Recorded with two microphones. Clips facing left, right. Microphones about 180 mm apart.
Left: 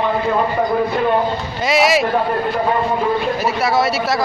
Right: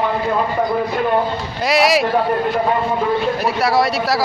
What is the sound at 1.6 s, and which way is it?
Speech, centre (ahead or behind).